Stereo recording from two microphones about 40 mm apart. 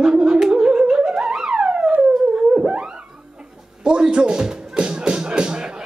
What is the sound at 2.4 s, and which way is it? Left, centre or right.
Theremin, right.